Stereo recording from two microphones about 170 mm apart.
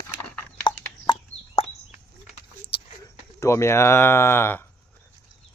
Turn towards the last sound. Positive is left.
turn(degrees=15)  # may be behind; listen again after turning